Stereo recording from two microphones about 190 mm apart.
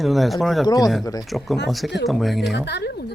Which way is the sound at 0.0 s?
Centre (ahead or behind).